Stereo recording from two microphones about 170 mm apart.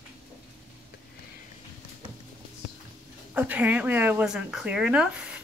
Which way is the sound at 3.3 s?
10° right (ahead or behind).